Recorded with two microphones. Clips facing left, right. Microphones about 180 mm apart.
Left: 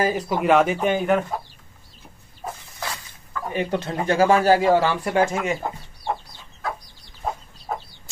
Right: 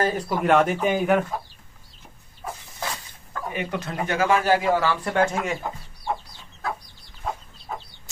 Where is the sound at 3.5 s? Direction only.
35° left (ahead or behind).